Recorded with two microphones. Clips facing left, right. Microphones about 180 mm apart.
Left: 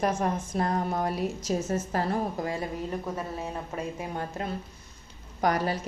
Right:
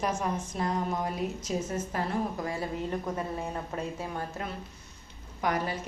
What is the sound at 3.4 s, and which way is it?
Speech, 10° left (ahead or behind).